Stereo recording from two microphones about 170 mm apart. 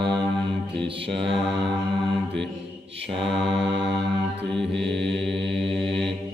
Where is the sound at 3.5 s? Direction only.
90° right.